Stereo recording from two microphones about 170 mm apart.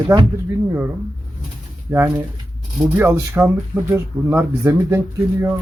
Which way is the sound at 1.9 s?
15° right (ahead or behind).